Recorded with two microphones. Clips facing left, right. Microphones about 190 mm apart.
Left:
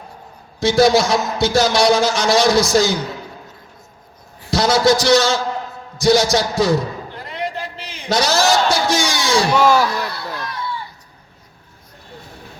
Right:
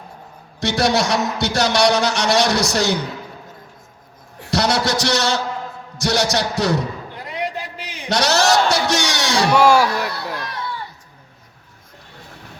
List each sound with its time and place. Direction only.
0.6 s a man's voice: 65° right (ahead or behind)
4.4 s a man's voice: 65° right (ahead or behind)
7.3 s a sound: 15° right (ahead or behind)
8.1 s a man's voice: 70° right (ahead or behind)
9.5 s speech: 10° right (ahead or behind)